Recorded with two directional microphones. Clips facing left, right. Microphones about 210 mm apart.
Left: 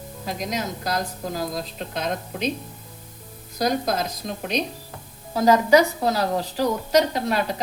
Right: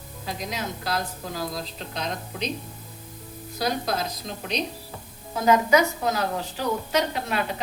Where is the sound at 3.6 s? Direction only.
45° left (ahead or behind).